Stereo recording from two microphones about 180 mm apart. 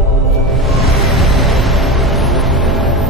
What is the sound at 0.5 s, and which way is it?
Music, centre (ahead or behind).